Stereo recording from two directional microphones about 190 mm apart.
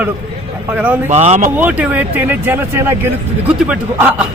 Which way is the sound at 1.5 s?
5° right (ahead or behind).